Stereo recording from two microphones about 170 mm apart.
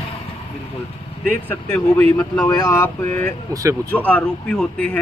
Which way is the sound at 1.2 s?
10° left (ahead or behind).